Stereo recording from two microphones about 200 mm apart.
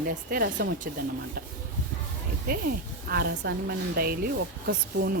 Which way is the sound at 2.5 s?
50° right (ahead or behind).